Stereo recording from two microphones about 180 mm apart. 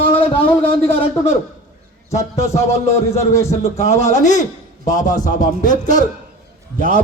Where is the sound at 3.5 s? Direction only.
40° left (ahead or behind).